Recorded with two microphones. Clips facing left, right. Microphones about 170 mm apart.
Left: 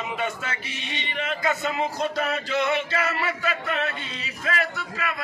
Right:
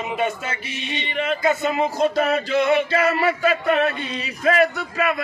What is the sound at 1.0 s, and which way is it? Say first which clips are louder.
Chant: right 6 dB; 30° right (ahead or behind).